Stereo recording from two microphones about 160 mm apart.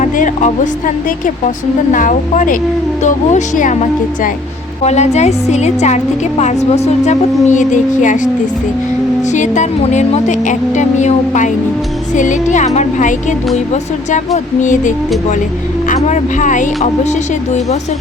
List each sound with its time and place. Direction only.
0.0 s speech: 50° left (ahead or behind)
1.9 s speech: 55° left (ahead or behind)
9.3 s speech: 50° left (ahead or behind)
14.6 s speech: 50° left (ahead or behind)
16.0 s speech: 50° left (ahead or behind)